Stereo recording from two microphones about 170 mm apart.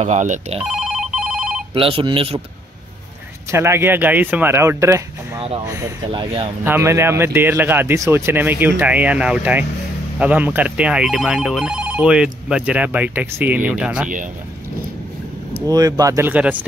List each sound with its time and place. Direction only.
0.0 s speech: 45° right (ahead or behind)
0.6 s telephone bell ringing: 5° right (ahead or behind)
1.7 s speech: 30° right (ahead or behind)
3.5 s speech: 15° right (ahead or behind)
15.6 s speech: 20° right (ahead or behind)